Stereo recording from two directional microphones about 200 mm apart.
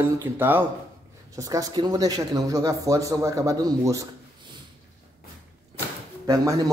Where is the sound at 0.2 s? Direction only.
10° right (ahead or behind).